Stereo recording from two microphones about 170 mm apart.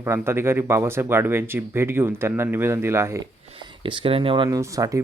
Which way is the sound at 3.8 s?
30° right (ahead or behind).